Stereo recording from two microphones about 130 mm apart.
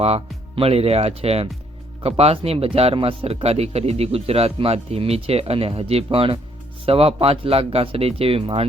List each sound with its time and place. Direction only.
0.0 s speech: 50° right (ahead or behind)